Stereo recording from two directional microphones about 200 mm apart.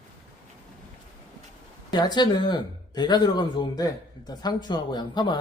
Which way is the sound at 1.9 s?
20° left (ahead or behind).